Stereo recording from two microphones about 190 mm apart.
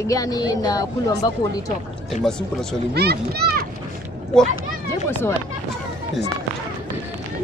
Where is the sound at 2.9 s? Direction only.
60° right (ahead or behind).